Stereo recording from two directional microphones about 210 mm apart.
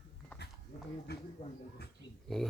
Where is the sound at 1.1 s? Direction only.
50° left (ahead or behind).